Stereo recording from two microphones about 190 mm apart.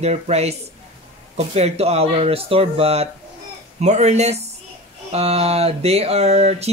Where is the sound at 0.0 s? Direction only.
35° right (ahead or behind).